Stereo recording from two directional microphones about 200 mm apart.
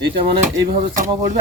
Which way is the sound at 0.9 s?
40° right (ahead or behind).